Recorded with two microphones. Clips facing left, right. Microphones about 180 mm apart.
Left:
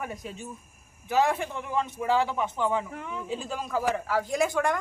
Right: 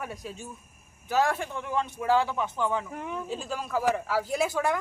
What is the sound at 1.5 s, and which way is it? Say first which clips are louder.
Speech: left 1 dB; 5° left (ahead or behind).